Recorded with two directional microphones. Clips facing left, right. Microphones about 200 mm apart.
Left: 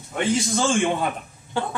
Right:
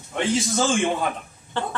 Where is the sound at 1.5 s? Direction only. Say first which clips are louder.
Left 1 dB; 10° left (ahead or behind).